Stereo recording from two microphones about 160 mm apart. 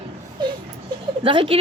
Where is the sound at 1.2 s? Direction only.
35° right (ahead or behind).